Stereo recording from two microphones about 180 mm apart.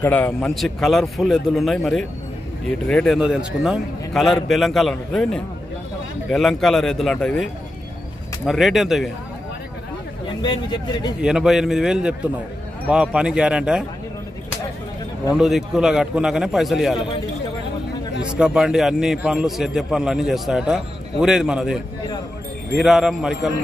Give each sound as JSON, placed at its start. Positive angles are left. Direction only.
{"t": 0.0, "sound": "a man's voice", "side_deg": 10}
{"t": 8.5, "sound": "a man's voice", "side_deg": 0}
{"t": 10.4, "sound": "speech", "side_deg": 25}
{"t": 11.1, "sound": "a man's voice", "side_deg": -5}
{"t": 15.3, "sound": "a man's voice", "side_deg": 0}
{"t": 18.4, "sound": "a man's voice", "side_deg": -5}